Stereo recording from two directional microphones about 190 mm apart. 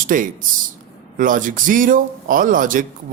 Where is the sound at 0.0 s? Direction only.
45° right (ahead or behind).